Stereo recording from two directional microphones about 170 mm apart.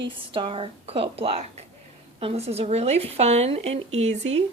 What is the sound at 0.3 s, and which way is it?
Speech, 30° right (ahead or behind).